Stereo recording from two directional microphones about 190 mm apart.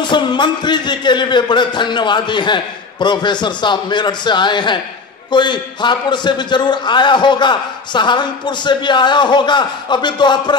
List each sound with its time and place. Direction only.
0.0 s a man's voice: 25° left (ahead or behind)